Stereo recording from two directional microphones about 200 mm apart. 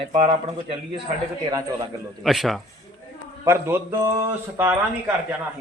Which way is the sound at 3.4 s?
15° right (ahead or behind).